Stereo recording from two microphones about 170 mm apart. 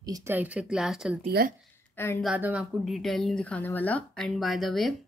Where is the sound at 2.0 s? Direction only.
15° left (ahead or behind).